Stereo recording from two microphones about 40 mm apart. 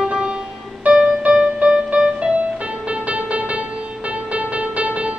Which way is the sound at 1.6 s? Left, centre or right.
Right.